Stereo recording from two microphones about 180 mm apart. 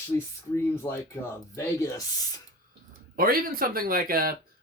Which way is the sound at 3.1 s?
55° right (ahead or behind).